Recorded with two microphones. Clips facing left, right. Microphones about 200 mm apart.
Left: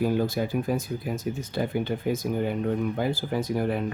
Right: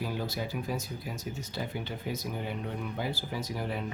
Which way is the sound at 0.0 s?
50° left (ahead or behind).